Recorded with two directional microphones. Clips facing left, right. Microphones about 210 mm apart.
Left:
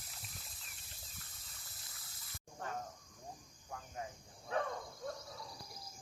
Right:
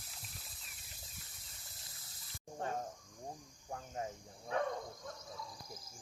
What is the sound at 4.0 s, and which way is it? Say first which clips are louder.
Cricket: right 4 dB; 35° right (ahead or behind).